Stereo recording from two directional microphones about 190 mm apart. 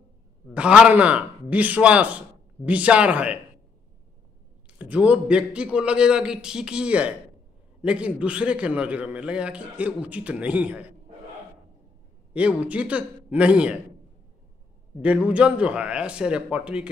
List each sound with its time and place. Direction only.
0.6 s a man's voice: 5° right (ahead or behind)
4.7 s a man's voice: 5° right (ahead or behind)
12.4 s a man's voice: 5° right (ahead or behind)
15.0 s a man's voice: 5° right (ahead or behind)